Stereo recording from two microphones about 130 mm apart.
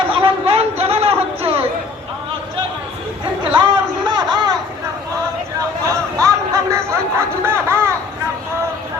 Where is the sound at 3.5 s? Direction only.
35° right (ahead or behind).